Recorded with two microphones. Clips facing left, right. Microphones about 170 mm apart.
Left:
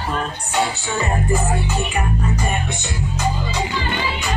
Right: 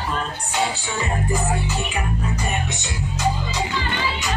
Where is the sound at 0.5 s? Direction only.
55° left (ahead or behind).